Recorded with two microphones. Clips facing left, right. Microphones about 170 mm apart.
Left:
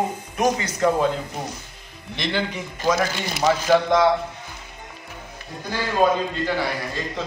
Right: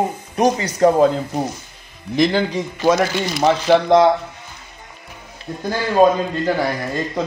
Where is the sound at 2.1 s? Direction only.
40° right (ahead or behind).